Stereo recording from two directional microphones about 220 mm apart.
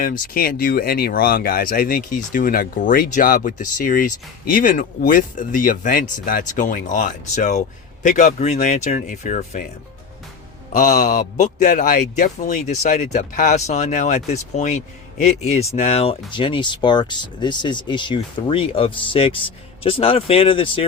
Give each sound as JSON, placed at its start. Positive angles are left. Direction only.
{"t": 0.0, "sound": "speech", "side_deg": 40}
{"t": 10.7, "sound": "speech", "side_deg": 35}